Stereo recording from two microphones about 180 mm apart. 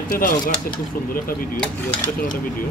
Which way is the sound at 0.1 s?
50° left (ahead or behind).